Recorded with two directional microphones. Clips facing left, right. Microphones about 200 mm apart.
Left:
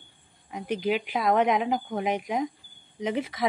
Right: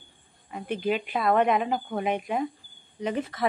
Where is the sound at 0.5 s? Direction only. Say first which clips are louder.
Even; 10° left (ahead or behind).